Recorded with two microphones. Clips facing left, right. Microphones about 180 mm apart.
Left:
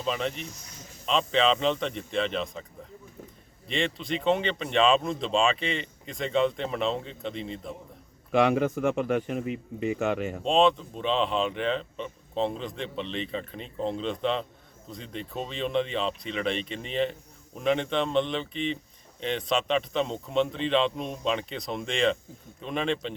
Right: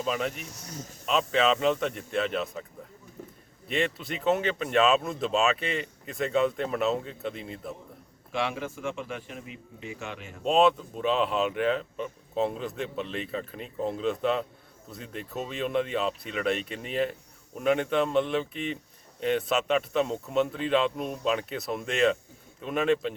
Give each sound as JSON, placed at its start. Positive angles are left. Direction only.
{"t": 0.0, "sound": "speech", "side_deg": -5}
{"t": 3.7, "sound": "speech", "side_deg": -5}
{"t": 8.3, "sound": "speech", "side_deg": 55}
{"t": 10.4, "sound": "speech", "side_deg": -5}